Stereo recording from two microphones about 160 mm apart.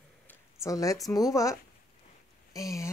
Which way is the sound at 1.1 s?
20° left (ahead or behind).